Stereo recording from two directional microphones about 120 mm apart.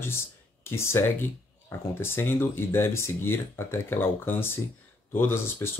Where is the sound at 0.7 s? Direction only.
20° left (ahead or behind).